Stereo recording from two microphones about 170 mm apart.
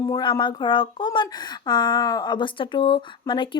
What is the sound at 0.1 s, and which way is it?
Speech, 25° left (ahead or behind).